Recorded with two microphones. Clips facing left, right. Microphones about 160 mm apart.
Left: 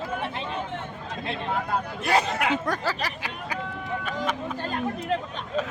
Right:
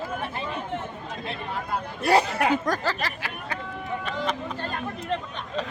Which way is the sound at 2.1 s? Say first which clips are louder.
Right 3 dB; 35° right (ahead or behind).